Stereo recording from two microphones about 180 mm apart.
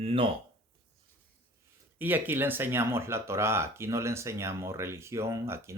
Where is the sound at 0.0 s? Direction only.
30° right (ahead or behind).